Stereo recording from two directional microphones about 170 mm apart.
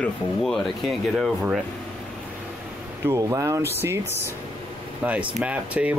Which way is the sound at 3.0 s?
15° right (ahead or behind).